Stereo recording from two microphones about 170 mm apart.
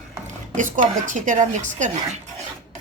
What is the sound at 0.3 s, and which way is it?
Speech, 50° right (ahead or behind).